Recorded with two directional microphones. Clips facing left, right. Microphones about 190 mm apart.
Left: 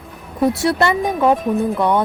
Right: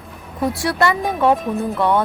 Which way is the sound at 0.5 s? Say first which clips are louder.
Left 2 dB; 25° left (ahead or behind).